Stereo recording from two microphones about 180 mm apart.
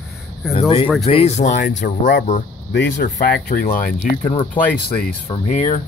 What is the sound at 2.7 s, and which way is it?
Speech, 70° left (ahead or behind).